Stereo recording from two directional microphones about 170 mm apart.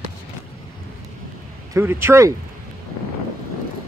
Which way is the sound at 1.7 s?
15° right (ahead or behind).